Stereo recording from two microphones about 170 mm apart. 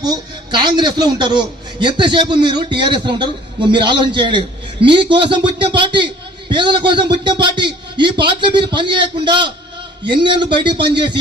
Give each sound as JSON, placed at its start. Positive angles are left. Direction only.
{"t": 0.0, "sound": "a man's voice", "side_deg": -25}